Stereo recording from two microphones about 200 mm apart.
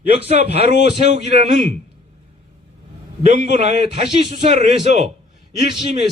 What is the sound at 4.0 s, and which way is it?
Speech, 35° right (ahead or behind).